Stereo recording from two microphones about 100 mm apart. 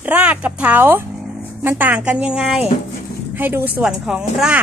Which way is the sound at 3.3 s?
20° right (ahead or behind).